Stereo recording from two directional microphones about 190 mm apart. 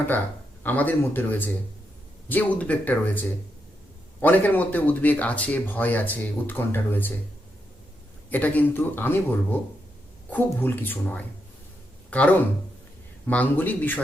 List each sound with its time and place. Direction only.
0.6 s speech: 10° left (ahead or behind)
8.3 s speech: 10° left (ahead or behind)
13.2 s speech: 10° left (ahead or behind)